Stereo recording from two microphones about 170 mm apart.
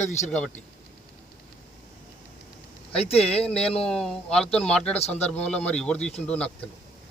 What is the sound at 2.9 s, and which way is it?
Speech, 35° left (ahead or behind).